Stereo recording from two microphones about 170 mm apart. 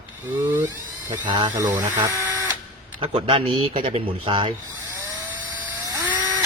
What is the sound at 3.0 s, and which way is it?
Speech, 30° right (ahead or behind).